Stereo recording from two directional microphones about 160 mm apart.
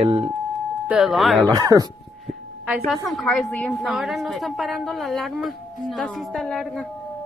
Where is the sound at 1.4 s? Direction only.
25° right (ahead or behind).